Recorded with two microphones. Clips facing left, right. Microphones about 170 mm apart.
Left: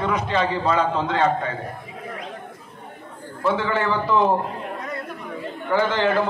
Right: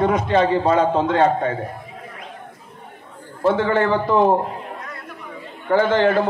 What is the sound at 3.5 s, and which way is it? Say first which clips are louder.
Speech: right 5 dB; 50° right (ahead or behind).